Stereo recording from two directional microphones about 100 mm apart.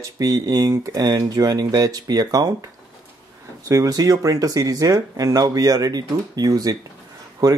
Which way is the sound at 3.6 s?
35° right (ahead or behind).